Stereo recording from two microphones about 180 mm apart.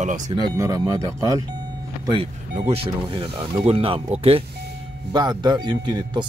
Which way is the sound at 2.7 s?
30° right (ahead or behind).